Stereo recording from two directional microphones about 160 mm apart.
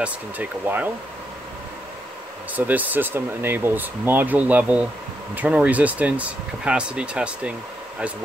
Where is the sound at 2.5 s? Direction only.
10° right (ahead or behind).